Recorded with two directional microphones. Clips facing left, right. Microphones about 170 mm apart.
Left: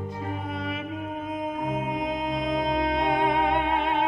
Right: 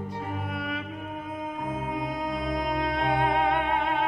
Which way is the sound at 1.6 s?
20° left (ahead or behind).